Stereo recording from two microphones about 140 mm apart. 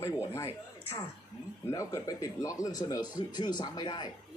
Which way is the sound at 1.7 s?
20° left (ahead or behind).